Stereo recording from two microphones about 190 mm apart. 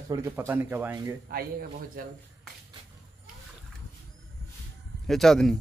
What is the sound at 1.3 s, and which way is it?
Speech, 50° right (ahead or behind).